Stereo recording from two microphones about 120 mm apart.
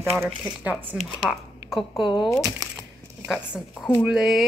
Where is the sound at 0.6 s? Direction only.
15° right (ahead or behind).